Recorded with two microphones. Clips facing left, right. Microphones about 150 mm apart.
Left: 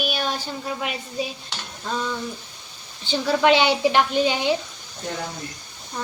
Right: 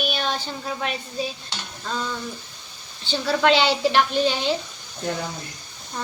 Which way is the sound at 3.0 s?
15° left (ahead or behind).